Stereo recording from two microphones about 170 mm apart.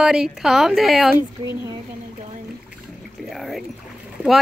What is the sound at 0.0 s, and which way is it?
Speech, 5° right (ahead or behind).